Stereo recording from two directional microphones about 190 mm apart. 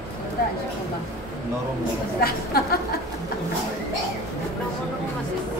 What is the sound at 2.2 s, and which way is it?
Speech, 55° left (ahead or behind).